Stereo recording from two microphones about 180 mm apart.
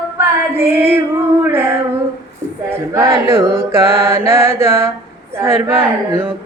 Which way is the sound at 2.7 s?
15° right (ahead or behind).